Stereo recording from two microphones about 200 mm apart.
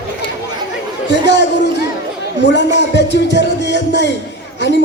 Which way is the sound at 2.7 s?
60° left (ahead or behind).